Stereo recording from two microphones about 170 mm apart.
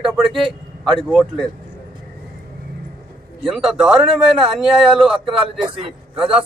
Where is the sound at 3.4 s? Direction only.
Centre (ahead or behind).